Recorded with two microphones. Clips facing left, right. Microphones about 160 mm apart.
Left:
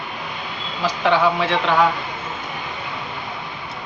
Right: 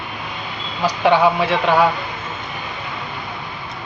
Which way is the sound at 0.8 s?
15° right (ahead or behind).